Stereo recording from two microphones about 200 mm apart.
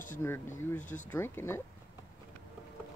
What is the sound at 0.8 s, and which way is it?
Speech, 40° left (ahead or behind).